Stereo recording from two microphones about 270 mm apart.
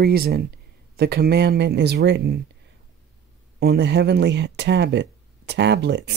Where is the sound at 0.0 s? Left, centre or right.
Right.